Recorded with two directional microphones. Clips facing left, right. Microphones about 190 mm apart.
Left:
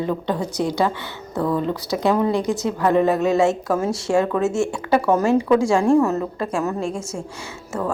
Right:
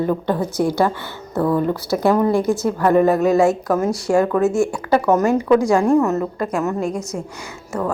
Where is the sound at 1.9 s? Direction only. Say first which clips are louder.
Right 3 dB; 20° left (ahead or behind).